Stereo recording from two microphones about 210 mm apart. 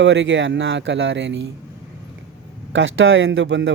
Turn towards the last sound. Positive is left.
turn(degrees=-60)  # may be behind; listen again after turning